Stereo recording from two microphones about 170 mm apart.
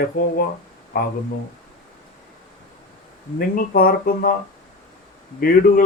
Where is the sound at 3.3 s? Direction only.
60° left (ahead or behind).